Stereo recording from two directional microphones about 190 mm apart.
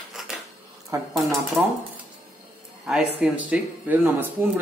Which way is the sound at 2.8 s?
5° right (ahead or behind).